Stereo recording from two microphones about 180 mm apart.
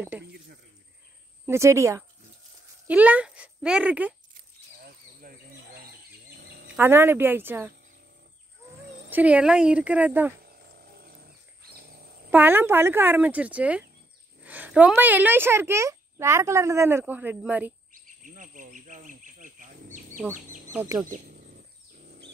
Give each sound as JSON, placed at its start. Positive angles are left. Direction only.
{"t": 1.4, "sound": "a woman's voice", "side_deg": -15}
{"t": 5.2, "sound": "bird", "side_deg": -50}
{"t": 6.5, "sound": "a sound", "side_deg": -75}
{"t": 6.8, "sound": "a woman's voice", "side_deg": -10}
{"t": 9.1, "sound": "a woman's voice", "side_deg": -5}
{"t": 12.3, "sound": "a woman's voice", "side_deg": -10}
{"t": 17.9, "sound": "a sound", "side_deg": -45}
{"t": 20.3, "sound": "speech", "side_deg": -45}
{"t": 20.7, "sound": "a woman's voice", "side_deg": -15}